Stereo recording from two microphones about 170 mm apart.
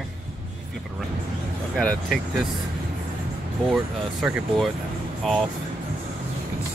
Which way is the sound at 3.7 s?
Centre (ahead or behind).